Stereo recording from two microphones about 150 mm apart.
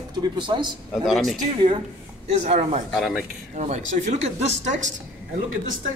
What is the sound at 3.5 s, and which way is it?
A man's voice, 50° right (ahead or behind).